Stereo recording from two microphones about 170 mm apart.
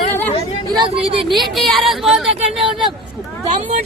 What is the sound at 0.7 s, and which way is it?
Speech, 30° right (ahead or behind).